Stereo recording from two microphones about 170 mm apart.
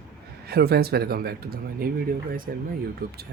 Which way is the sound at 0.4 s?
70° right (ahead or behind).